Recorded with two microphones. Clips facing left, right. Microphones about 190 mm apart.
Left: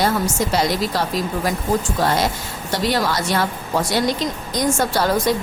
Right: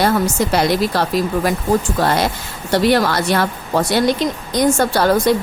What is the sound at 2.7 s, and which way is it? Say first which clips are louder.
Speech: right 6 dB; 60° right (ahead or behind).